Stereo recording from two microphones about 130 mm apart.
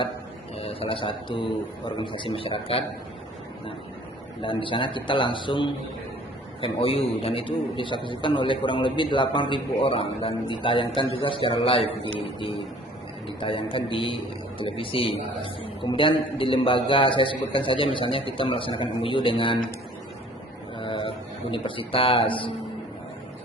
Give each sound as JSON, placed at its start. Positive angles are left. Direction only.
{"t": 0.6, "sound": "a man's voice", "side_deg": 45}
{"t": 4.4, "sound": "a man's voice", "side_deg": 40}
{"t": 20.7, "sound": "speech", "side_deg": 40}